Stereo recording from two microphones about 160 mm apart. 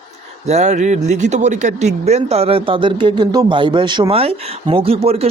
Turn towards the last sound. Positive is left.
turn(degrees=-40)  # may be behind; listen again after turning